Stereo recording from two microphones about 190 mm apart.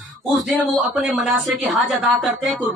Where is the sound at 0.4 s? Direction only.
Centre (ahead or behind).